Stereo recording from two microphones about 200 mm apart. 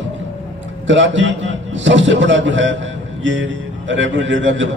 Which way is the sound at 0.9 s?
70° right (ahead or behind).